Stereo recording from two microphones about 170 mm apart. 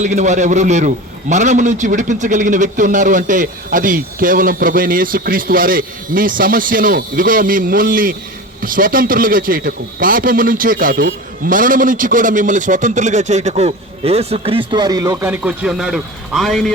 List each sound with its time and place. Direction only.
0.0 s a man's voice: 45° right (ahead or behind); by 16.7 s centre (ahead or behind)